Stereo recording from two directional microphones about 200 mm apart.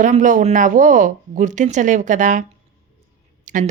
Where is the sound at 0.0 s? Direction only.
40° right (ahead or behind).